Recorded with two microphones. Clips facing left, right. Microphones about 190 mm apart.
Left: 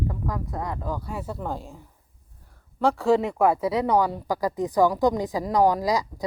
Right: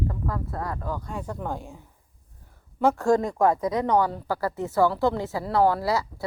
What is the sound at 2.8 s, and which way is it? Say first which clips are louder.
Speech: even; centre (ahead or behind).